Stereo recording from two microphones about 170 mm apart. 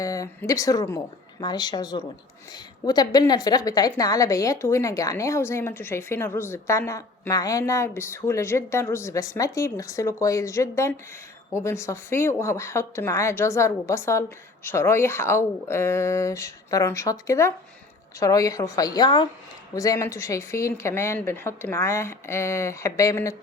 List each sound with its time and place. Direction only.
0.0 s a woman's voice: 20° left (ahead or behind)